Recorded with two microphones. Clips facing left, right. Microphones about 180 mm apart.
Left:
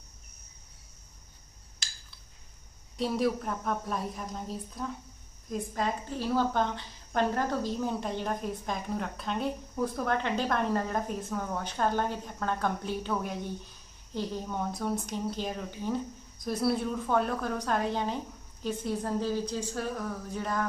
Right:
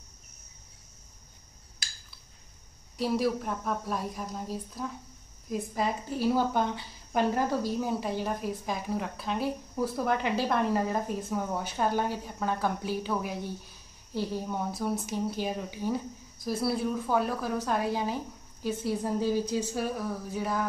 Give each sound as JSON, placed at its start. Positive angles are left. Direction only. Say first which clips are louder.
{"t": 3.0, "sound": "a woman's voice", "louder": "right 1 dB", "side_deg": -5}